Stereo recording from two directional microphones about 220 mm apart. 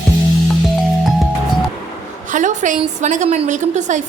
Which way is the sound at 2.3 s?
35° right (ahead or behind).